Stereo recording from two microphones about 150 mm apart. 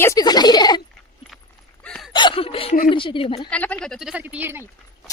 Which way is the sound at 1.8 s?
5° left (ahead or behind).